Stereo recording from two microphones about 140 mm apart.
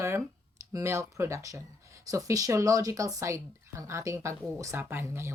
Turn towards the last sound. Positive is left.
turn(degrees=-20)  # may be behind; listen again after turning